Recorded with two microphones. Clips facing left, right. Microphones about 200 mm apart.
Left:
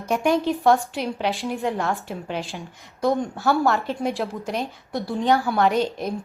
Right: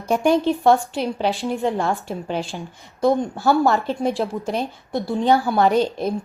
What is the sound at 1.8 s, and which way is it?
Speech, 30° right (ahead or behind).